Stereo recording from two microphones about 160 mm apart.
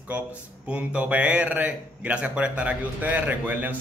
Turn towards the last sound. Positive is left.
turn(degrees=-10)  # may be behind; listen again after turning